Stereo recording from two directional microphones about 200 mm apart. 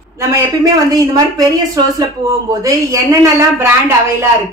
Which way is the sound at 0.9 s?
20° right (ahead or behind).